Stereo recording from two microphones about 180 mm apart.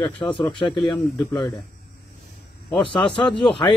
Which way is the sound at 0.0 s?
5° left (ahead or behind).